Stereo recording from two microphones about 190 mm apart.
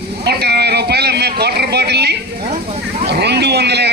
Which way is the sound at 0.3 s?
55° right (ahead or behind).